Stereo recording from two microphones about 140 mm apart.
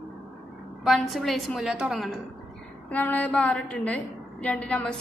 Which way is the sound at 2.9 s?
10° left (ahead or behind).